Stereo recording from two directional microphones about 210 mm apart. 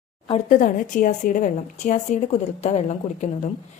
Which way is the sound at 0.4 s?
40° left (ahead or behind).